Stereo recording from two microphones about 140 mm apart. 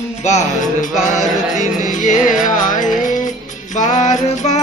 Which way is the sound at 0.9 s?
60° left (ahead or behind).